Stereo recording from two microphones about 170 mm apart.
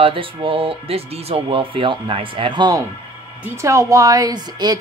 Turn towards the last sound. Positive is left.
turn(degrees=-25)  # may be behind; listen again after turning